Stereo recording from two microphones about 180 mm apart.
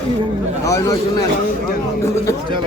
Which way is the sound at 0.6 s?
20° left (ahead or behind).